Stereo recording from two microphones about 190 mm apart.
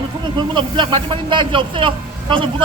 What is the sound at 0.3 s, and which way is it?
Speech, 25° right (ahead or behind).